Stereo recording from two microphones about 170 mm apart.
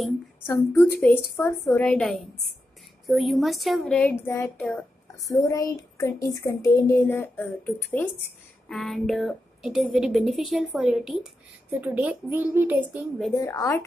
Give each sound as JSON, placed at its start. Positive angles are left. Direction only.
{"t": 0.5, "sound": "speech", "side_deg": 15}
{"t": 1.9, "sound": "speech", "side_deg": 5}
{"t": 5.2, "sound": "speech", "side_deg": 20}
{"t": 13.4, "sound": "speech", "side_deg": 20}